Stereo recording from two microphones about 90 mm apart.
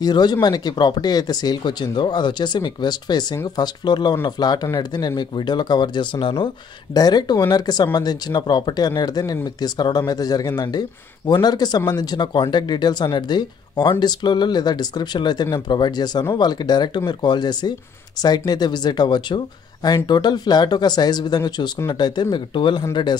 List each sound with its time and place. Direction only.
0.0 s speech: 50° left (ahead or behind); by 6.5 s 75° left (ahead or behind)
6.9 s speech: 50° left (ahead or behind)